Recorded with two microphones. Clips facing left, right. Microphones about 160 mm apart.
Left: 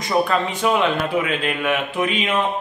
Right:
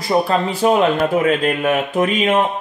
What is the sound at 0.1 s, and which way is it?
A man's voice, 30° right (ahead or behind).